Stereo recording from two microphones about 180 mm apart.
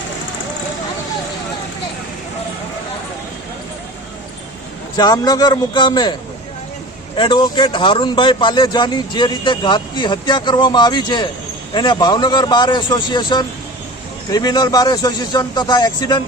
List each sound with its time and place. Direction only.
4.9 s a man's voice: 20° left (ahead or behind)
7.2 s a man's voice: 25° left (ahead or behind)